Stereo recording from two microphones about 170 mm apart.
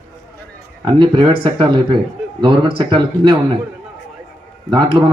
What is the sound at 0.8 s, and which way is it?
Speech, 25° right (ahead or behind).